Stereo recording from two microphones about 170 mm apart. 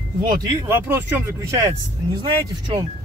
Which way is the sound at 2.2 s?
25° right (ahead or behind).